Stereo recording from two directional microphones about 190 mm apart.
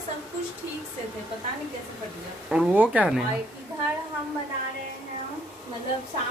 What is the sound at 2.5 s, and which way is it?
Speech, 5° right (ahead or behind).